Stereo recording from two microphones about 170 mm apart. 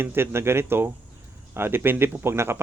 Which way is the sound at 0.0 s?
15° right (ahead or behind).